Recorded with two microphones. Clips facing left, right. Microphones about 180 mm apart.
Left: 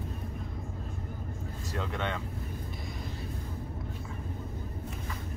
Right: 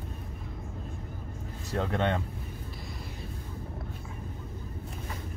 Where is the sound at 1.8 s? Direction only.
45° right (ahead or behind).